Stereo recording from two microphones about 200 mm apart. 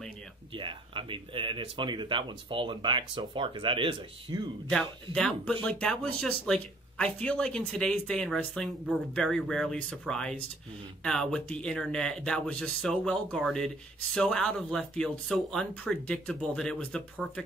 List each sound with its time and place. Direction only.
0.5 s speech: 25° right (ahead or behind)
4.6 s speech: 5° left (ahead or behind)